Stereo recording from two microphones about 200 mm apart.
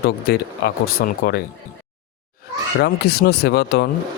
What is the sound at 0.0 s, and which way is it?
Speech, 50° left (ahead or behind).